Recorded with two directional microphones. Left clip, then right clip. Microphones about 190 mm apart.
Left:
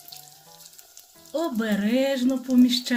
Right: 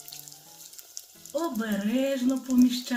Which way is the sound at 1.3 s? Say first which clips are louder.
Left 4 dB; 60° left (ahead or behind).